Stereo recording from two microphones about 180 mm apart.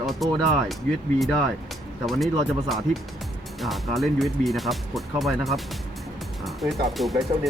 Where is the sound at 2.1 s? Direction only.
Centre (ahead or behind).